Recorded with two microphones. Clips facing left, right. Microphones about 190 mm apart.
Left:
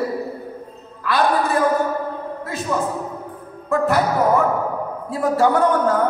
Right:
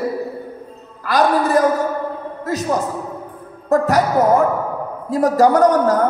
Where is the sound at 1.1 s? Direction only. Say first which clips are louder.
Right 3 dB; 40° right (ahead or behind).